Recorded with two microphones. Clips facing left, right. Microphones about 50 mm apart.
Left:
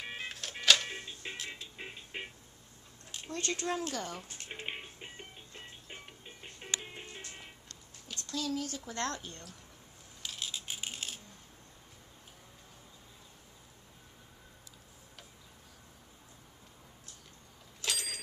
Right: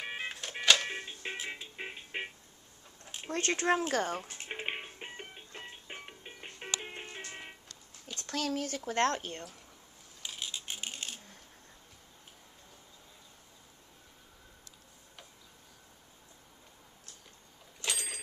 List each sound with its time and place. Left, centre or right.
0.0 s music: centre
0.7 s cash register: centre
3.3 s speech: right
4.2 s music: right
7.2 s vehicle: right
8.3 s speech: right
10.2 s a sound: centre
10.5 s a sound: centre
17.8 s a sound: centre